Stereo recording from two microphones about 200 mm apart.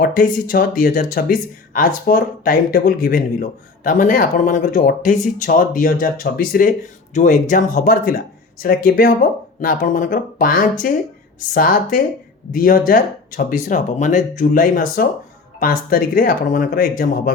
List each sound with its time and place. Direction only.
0.0 s speech: 45° left (ahead or behind)